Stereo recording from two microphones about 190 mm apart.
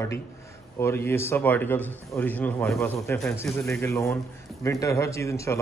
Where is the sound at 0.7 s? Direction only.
15° left (ahead or behind).